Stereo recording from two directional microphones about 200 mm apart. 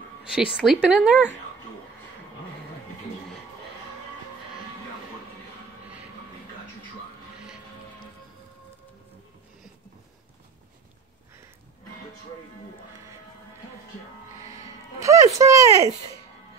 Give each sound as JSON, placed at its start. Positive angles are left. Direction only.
{"t": 0.3, "sound": "speech", "side_deg": -5}
{"t": 14.4, "sound": "music", "side_deg": 35}
{"t": 15.0, "sound": "a sound", "side_deg": -15}